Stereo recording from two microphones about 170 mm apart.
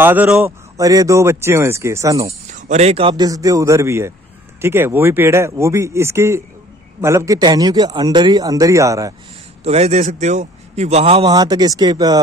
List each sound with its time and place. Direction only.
0.0 s speech: 10° right (ahead or behind)
2.5 s speech: 40° right (ahead or behind); by 9.1 s 20° right (ahead or behind)
9.6 s a man's voice: 35° right (ahead or behind)
11.2 s speech: 25° right (ahead or behind)